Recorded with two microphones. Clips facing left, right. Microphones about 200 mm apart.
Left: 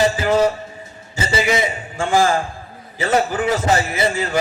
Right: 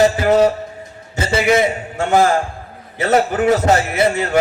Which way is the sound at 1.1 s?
60° right (ahead or behind).